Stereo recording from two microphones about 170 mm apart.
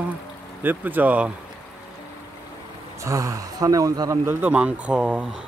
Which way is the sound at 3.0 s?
20° right (ahead or behind).